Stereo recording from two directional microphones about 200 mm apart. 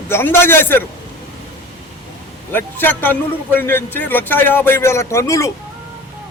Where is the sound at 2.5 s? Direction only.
10° left (ahead or behind).